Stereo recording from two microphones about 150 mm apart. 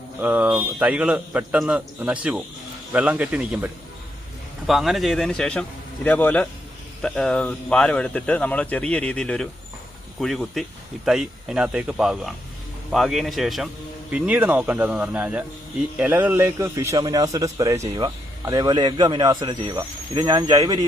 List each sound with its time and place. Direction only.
0.2 s a man's voice: 10° right (ahead or behind); by 20.7 s 25° right (ahead or behind)